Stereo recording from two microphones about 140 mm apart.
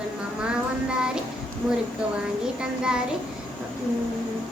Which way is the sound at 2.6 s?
5° right (ahead or behind).